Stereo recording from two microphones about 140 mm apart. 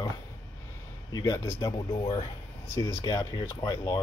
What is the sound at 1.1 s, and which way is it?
Speech, 20° left (ahead or behind).